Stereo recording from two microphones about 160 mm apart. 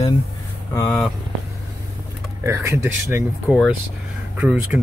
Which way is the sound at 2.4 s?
15° right (ahead or behind).